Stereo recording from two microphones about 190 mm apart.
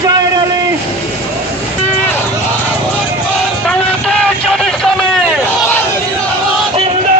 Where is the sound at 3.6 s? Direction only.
5° left (ahead or behind).